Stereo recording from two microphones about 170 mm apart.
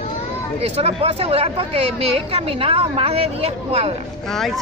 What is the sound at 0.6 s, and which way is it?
Speech, 35° right (ahead or behind).